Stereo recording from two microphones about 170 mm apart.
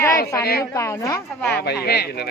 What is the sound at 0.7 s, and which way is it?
Speech, 20° left (ahead or behind).